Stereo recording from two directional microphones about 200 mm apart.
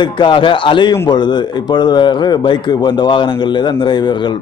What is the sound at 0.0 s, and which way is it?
Speech, 25° left (ahead or behind).